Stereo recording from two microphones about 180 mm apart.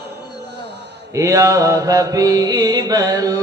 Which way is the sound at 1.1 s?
15° right (ahead or behind).